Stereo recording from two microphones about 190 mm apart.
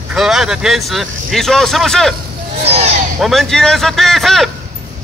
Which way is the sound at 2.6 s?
35° right (ahead or behind).